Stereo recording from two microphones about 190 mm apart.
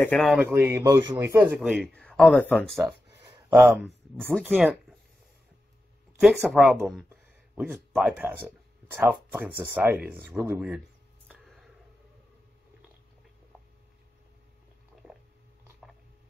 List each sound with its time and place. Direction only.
0.0 s speech: centre (ahead or behind)
0.7 s speech: 25° right (ahead or behind)
1.2 s speech: 10° right (ahead or behind)
3.4 s speech: 10° right (ahead or behind)
3.8 s speech: centre (ahead or behind)
6.1 s speech: centre (ahead or behind)
11.2 s a sound: centre (ahead or behind)